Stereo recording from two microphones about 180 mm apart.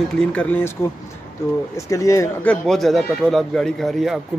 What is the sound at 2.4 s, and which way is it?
Speech, centre (ahead or behind).